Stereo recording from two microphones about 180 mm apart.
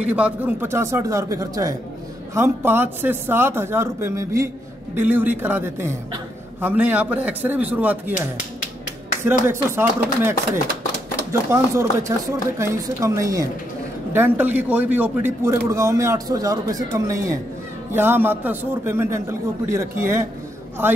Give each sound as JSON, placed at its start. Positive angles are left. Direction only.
{"t": 0.1, "sound": "a man's voice", "side_deg": -10}
{"t": 9.5, "sound": "a man's voice", "side_deg": -10}